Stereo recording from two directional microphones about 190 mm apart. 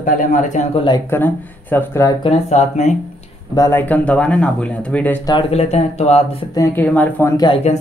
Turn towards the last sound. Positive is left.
turn(degrees=15)  # may be behind; listen again after turning